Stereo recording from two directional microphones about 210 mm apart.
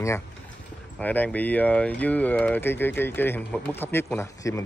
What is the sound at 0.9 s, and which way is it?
Speech, 5° left (ahead or behind).